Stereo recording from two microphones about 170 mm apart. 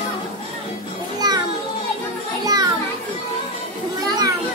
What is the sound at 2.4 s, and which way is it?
Children playing, 25° right (ahead or behind).